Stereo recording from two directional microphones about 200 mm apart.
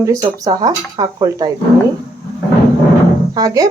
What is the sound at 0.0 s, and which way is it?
Speech, 15° right (ahead or behind).